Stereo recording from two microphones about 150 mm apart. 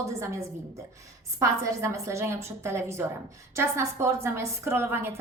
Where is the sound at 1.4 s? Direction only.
20° right (ahead or behind).